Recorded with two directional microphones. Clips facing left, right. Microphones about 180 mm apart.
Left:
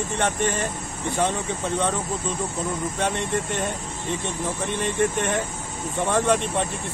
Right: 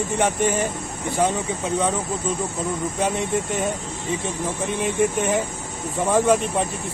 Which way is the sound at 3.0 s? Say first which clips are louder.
Right 3 dB; 5° right (ahead or behind).